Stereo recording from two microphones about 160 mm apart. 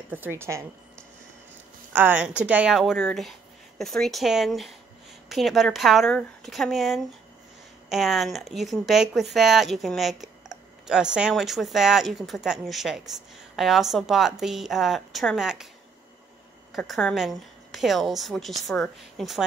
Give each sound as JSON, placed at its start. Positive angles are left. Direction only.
{"t": 0.1, "sound": "a woman's voice", "side_deg": -15}
{"t": 1.9, "sound": "speech", "side_deg": -10}
{"t": 16.7, "sound": "speech", "side_deg": 0}